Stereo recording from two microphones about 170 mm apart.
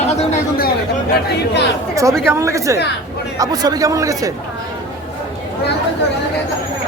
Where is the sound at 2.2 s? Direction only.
15° right (ahead or behind).